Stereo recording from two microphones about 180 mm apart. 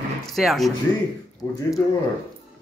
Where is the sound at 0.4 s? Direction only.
Centre (ahead or behind).